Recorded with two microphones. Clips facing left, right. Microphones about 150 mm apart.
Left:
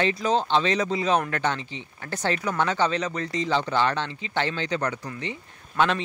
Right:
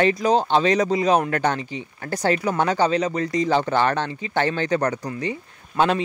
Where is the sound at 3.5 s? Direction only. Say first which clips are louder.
Right 2 dB; 50° right (ahead or behind).